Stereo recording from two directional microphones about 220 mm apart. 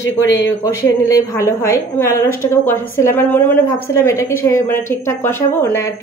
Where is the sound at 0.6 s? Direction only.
15° left (ahead or behind).